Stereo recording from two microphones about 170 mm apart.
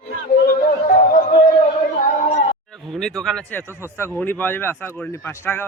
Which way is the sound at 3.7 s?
15° left (ahead or behind).